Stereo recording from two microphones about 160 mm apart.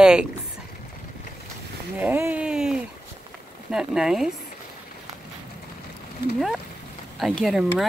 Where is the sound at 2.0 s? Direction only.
10° right (ahead or behind).